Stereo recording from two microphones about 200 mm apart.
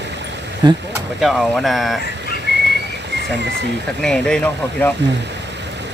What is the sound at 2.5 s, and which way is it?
Whistling, 60° right (ahead or behind).